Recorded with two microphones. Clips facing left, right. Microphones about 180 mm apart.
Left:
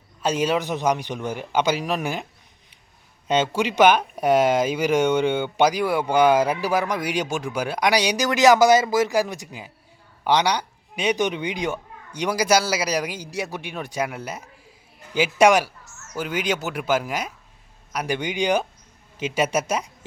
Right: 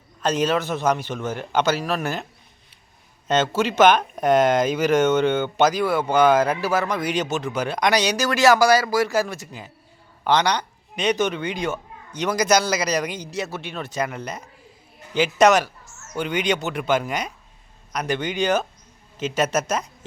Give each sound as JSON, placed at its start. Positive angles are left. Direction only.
{"t": 0.2, "sound": "speech", "side_deg": 10}
{"t": 3.2, "sound": "speech", "side_deg": 10}